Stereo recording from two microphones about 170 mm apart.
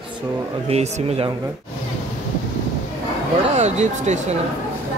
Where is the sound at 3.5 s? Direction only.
40° right (ahead or behind).